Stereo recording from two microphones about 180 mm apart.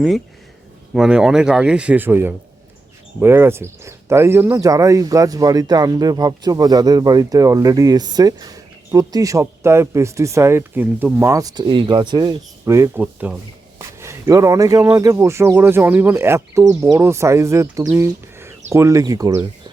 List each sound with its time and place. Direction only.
0.9 s speech: 5° right (ahead or behind)